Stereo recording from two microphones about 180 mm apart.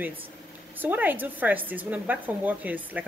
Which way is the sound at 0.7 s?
10° right (ahead or behind).